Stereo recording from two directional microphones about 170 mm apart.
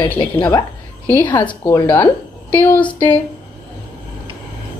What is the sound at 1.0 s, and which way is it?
Speech, 10° left (ahead or behind).